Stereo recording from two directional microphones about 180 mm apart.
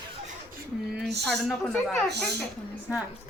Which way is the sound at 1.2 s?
Centre (ahead or behind).